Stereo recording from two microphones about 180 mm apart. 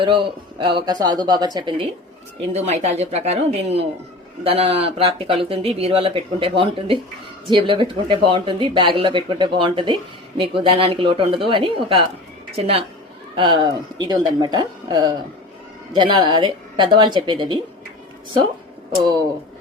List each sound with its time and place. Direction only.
0.6 s speech: 25° right (ahead or behind)
2.5 s speech: 35° right (ahead or behind)